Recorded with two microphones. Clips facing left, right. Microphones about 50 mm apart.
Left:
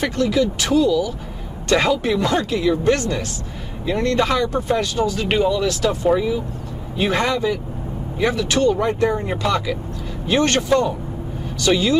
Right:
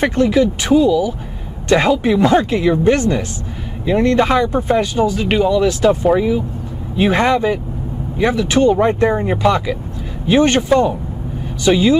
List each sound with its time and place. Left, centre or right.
0.0 s speech: right
8.2 s speech: centre
9.3 s speech: centre